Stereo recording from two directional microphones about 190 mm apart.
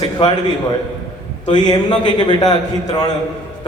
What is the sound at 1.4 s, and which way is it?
A man's voice, 20° left (ahead or behind).